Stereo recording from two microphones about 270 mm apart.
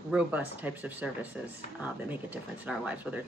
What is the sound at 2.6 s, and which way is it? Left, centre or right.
Speech, centre.